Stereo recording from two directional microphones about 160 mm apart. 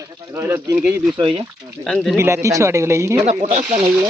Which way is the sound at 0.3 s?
15° right (ahead or behind).